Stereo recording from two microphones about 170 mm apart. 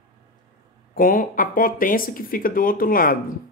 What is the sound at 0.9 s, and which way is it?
Speech, 55° left (ahead or behind).